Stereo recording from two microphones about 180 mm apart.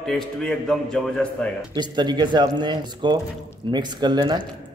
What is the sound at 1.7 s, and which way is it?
Speech, 25° right (ahead or behind).